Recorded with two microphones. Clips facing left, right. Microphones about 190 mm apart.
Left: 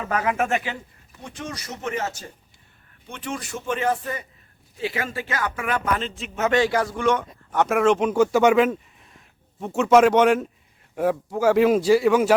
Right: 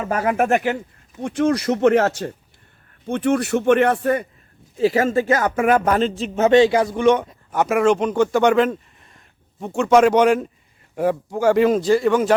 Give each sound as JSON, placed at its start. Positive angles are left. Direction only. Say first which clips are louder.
{"t": 0.1, "sound": "speech", "louder": "right 5 dB", "side_deg": -50}
{"t": 4.8, "sound": "speech", "louder": "right 11 dB", "side_deg": -40}
{"t": 7.5, "sound": "a man's voice", "louder": "right 2 dB", "side_deg": 0}